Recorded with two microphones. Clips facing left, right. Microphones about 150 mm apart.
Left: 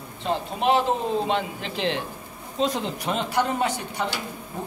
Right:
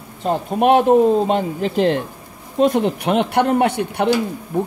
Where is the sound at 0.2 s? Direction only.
50° right (ahead or behind).